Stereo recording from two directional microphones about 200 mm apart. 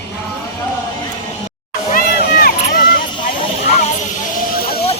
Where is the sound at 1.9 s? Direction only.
50° left (ahead or behind).